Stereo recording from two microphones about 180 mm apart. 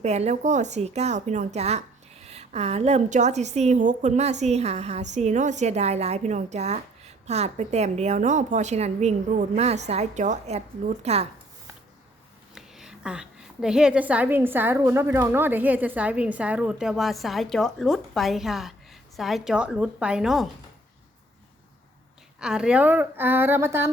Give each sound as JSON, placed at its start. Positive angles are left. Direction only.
{"t": 0.0, "sound": "a woman's voice", "side_deg": -40}
{"t": 12.5, "sound": "a woman's voice", "side_deg": 0}
{"t": 22.4, "sound": "a woman's voice", "side_deg": -5}